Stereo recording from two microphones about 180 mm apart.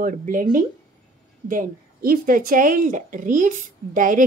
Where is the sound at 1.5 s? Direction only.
50° right (ahead or behind).